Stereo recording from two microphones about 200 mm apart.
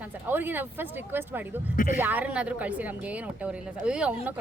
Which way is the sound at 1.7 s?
40° left (ahead or behind).